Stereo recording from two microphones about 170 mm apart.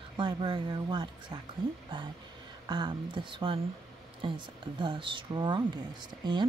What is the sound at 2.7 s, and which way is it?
Speech, 25° right (ahead or behind).